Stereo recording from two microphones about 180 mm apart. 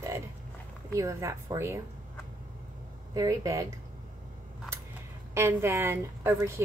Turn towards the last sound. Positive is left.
turn(degrees=-15)  # may be behind; listen again after turning